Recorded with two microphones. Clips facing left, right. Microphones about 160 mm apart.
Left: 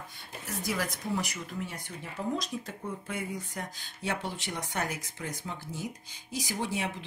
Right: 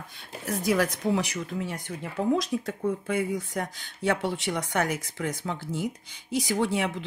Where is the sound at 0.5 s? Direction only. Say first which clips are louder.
Right 9 dB; 65° right (ahead or behind).